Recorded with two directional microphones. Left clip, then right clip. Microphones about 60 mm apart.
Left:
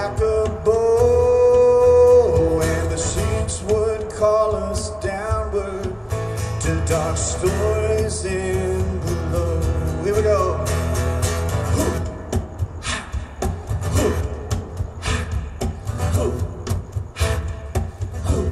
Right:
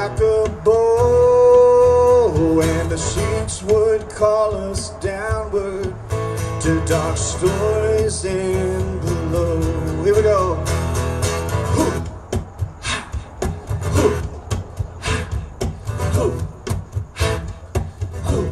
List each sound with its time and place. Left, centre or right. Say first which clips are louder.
0.7 s music: right 3 dB; centre
0.9 s music: right 2 dB; right
12.9 s rub: right 3 dB; right
15.0 s music: right 2 dB; right